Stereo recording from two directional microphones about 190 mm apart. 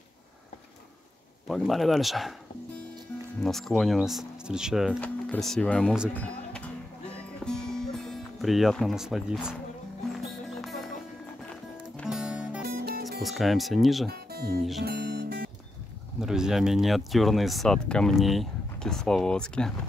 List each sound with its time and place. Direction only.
1.5 s speech: centre (ahead or behind)
3.4 s speech: centre (ahead or behind)
7.4 s music: 5° left (ahead or behind)
12.0 s music: 5° right (ahead or behind)
12.6 s music: 55° right (ahead or behind)
13.2 s speech: centre (ahead or behind)
14.3 s music: 55° right (ahead or behind)
16.2 s speech: 5° right (ahead or behind)